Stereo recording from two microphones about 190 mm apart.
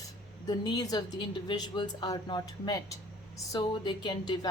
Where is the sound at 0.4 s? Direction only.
20° left (ahead or behind).